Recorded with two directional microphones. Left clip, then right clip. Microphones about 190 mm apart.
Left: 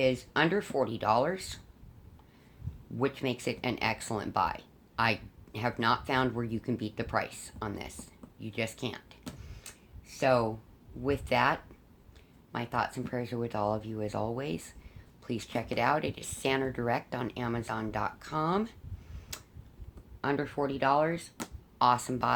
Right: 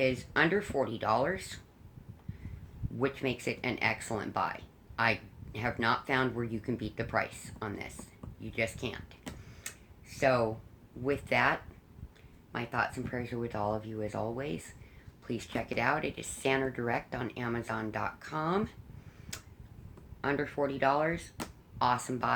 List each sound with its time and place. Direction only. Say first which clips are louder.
0.0 s speech: left 1 dB; 35° left (ahead or behind)
3.0 s speech: left 1 dB; 35° left (ahead or behind)
10.2 s speech: left 1 dB; 35° left (ahead or behind)
20.2 s speech: even; 35° left (ahead or behind)